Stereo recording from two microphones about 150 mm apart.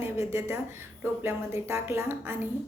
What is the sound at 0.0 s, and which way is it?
Speech, 15° right (ahead or behind).